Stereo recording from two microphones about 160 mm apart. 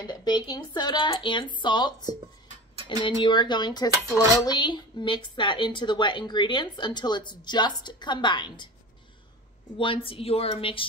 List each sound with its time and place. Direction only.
0.0 s speech: 25° left (ahead or behind)
9.8 s a woman's voice: 35° left (ahead or behind)